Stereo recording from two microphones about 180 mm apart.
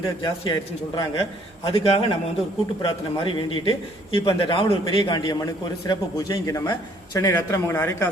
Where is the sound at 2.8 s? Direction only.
30° left (ahead or behind).